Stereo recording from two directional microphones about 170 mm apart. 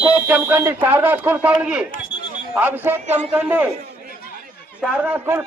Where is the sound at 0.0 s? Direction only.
10° right (ahead or behind).